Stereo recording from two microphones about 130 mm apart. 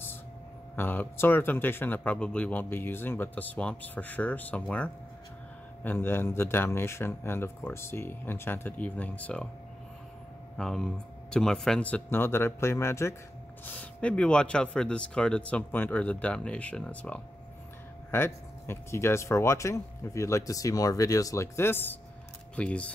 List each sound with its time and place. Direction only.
0.7 s speech: 15° left (ahead or behind)
10.6 s speech: 5° left (ahead or behind); by 13.1 s 20° left (ahead or behind)
13.7 s speech: 10° left (ahead or behind)